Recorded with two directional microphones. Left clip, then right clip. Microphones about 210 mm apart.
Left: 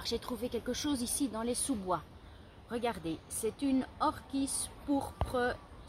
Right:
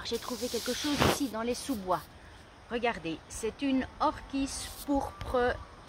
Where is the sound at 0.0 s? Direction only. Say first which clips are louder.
Right 2 dB; centre (ahead or behind).